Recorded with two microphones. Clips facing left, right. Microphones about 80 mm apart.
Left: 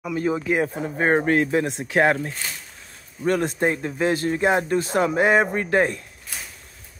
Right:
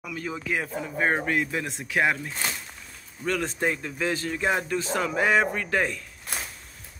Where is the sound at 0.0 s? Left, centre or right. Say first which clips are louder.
Left 9 dB; left.